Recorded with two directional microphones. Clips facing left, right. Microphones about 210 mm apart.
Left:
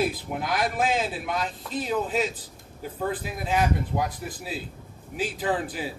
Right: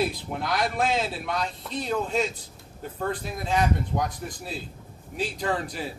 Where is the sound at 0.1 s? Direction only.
5° left (ahead or behind).